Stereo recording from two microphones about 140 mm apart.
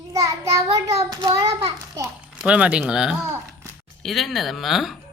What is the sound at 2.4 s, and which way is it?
Speech, 10° right (ahead or behind).